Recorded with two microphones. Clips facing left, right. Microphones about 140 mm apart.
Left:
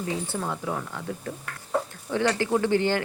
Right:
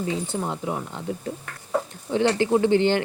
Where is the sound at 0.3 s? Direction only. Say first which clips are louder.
Right 2 dB; 20° right (ahead or behind).